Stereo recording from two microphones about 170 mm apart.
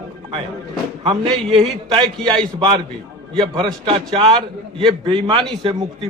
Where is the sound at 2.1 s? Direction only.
5° left (ahead or behind).